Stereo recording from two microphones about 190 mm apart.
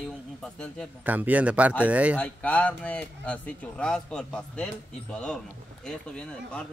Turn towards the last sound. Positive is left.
turn(degrees=5)  # may be behind; listen again after turning